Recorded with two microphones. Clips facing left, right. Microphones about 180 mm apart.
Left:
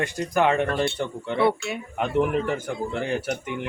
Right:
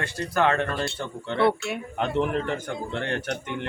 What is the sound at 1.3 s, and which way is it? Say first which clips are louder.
Speech: even; centre (ahead or behind).